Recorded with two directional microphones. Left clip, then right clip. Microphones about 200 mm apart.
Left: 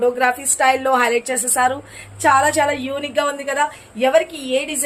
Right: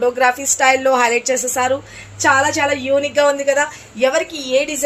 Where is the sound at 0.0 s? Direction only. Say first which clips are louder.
Right 2 dB; 20° left (ahead or behind).